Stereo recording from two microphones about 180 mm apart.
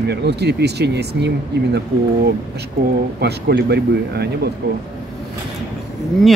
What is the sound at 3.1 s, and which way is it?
Speech, 65° right (ahead or behind).